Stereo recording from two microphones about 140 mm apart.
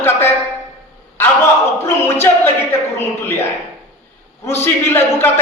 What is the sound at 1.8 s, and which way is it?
A man's voice, 15° left (ahead or behind).